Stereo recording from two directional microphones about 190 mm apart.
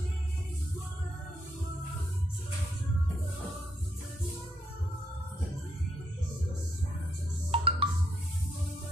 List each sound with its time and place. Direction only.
7.5 s music: 30° right (ahead or behind)